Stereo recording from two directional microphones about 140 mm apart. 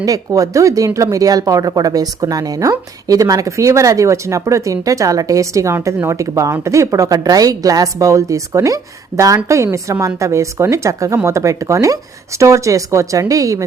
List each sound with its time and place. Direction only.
0.0 s speech: 25° right (ahead or behind)